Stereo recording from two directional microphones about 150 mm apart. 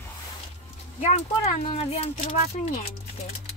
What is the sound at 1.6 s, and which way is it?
Speech, 45° left (ahead or behind).